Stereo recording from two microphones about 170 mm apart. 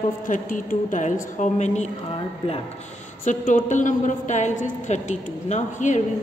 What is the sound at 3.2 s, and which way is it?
A woman's voice, 45° left (ahead or behind).